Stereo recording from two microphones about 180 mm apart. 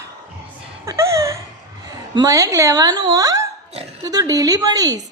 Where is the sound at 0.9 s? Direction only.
15° right (ahead or behind).